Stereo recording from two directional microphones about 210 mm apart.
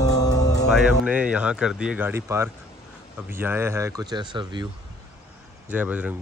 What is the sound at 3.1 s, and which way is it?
Speech, 10° right (ahead or behind).